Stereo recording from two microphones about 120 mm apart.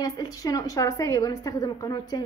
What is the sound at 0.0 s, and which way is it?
A woman's voice, 30° left (ahead or behind).